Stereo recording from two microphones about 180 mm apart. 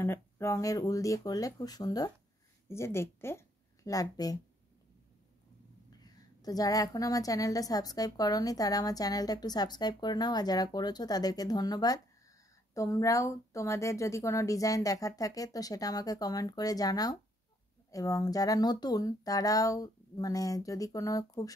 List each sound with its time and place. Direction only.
0.0 s a woman's voice: 15° left (ahead or behind)
5.9 s a woman's voice: 20° left (ahead or behind)